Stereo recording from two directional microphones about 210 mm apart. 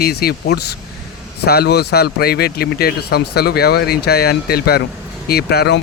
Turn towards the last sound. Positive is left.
turn(degrees=50)  # may be behind; listen again after turning